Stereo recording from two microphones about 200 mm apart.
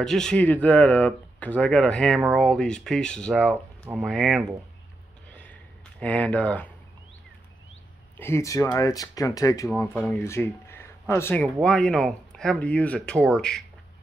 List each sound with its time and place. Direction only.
0.0 s speech: centre (ahead or behind)
5.3 s a sound: 5° left (ahead or behind)
8.2 s speech: 15° left (ahead or behind)